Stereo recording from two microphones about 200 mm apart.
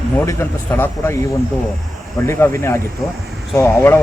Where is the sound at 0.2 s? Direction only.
10° left (ahead or behind).